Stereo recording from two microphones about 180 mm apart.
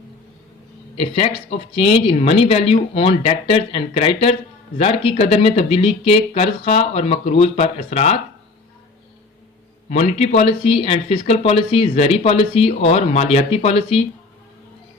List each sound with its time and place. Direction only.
0.9 s speech: 35° left (ahead or behind)
9.9 s speech: 35° left (ahead or behind)